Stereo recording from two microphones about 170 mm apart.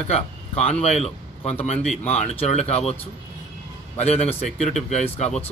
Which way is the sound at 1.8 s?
5° left (ahead or behind).